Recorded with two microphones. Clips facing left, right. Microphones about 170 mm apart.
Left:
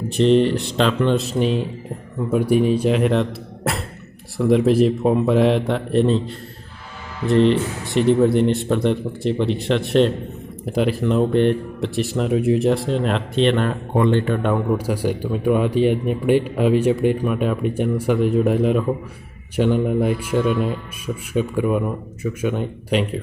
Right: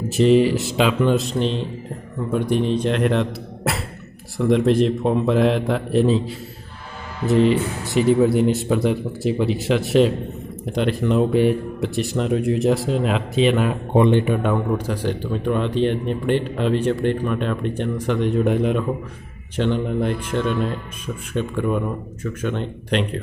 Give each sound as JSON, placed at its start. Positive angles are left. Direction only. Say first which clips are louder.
{"t": 0.1, "sound": "speech", "louder": "even", "side_deg": -5}
{"t": 13.9, "sound": "speech", "louder": "right 2 dB", "side_deg": -15}
{"t": 14.4, "sound": "speech", "louder": "left 1 dB", "side_deg": 5}